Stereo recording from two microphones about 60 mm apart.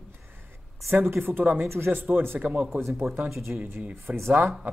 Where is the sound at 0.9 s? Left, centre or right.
Right.